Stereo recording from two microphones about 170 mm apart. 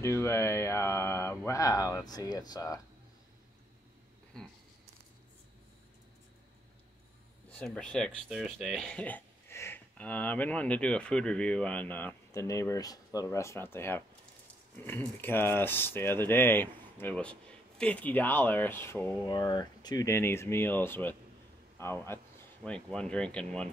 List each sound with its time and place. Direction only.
0.0 s speech: 15° left (ahead or behind)
4.3 s a sound: 5° left (ahead or behind)
7.5 s speech: 5° left (ahead or behind)
19.2 s speech: 25° left (ahead or behind); by 23.7 s 5° left (ahead or behind)